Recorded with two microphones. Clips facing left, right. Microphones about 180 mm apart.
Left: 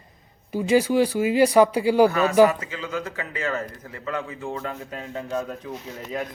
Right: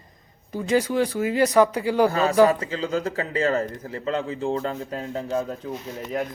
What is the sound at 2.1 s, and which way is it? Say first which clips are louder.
A man's voice: even; 30° right (ahead or behind).